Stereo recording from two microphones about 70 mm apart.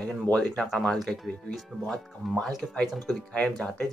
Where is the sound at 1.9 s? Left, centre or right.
Centre.